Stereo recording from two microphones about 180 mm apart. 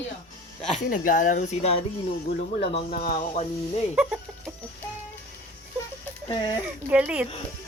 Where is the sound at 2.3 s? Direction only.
50° left (ahead or behind).